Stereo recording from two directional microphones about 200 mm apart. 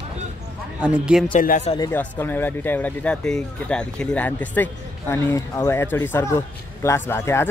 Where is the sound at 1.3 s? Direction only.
40° left (ahead or behind).